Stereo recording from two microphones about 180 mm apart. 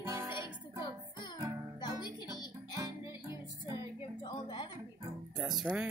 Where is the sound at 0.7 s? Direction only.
25° left (ahead or behind).